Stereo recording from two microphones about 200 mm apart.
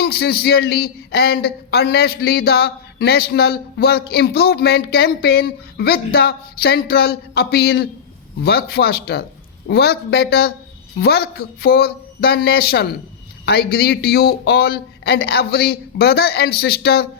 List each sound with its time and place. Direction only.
0.0 s speech: 50° left (ahead or behind)